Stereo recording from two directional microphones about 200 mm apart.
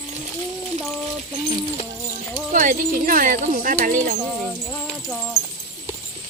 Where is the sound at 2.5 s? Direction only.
40° right (ahead or behind).